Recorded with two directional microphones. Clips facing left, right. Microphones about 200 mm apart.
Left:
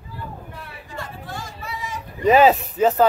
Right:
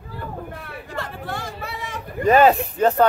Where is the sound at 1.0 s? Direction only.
65° right (ahead or behind).